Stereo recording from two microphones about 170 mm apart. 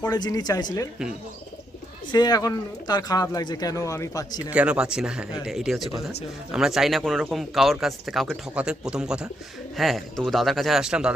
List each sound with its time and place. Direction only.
0.0 s speech: 25° left (ahead or behind)
2.1 s speech: 25° left (ahead or behind)
4.5 s speech: 5° right (ahead or behind)